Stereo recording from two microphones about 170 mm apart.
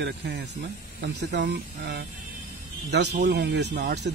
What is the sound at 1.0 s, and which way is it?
Speech, 90° right.